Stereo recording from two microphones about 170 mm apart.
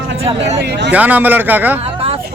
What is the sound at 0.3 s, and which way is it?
Speech, 40° right (ahead or behind).